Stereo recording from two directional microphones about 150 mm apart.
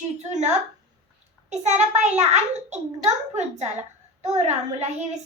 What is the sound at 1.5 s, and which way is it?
A child's voice, 50° right (ahead or behind).